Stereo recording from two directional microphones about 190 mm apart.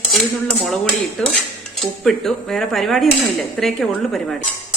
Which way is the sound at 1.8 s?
Centre (ahead or behind).